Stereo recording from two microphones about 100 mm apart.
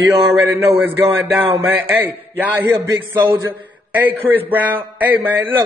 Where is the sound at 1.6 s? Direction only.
20° right (ahead or behind).